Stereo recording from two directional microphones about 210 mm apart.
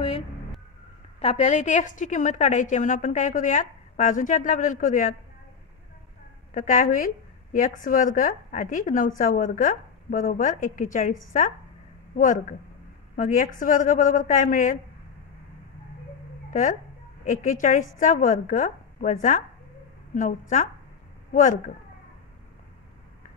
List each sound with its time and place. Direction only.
1.2 s a woman's voice: 30° left (ahead or behind)
6.5 s a woman's voice: 35° left (ahead or behind)
16.4 s a sound: 40° left (ahead or behind)
17.2 s a woman's voice: 40° left (ahead or behind)